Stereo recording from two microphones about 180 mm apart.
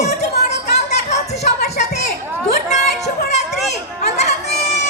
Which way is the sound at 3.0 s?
40° left (ahead or behind).